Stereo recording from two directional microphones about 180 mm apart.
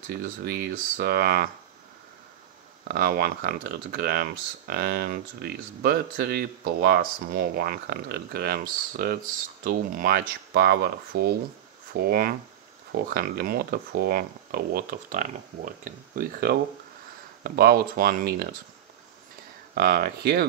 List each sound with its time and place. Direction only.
0.1 s speech: 60° right (ahead or behind)
2.9 s speech: 60° right (ahead or behind)
19.7 s speech: 55° right (ahead or behind)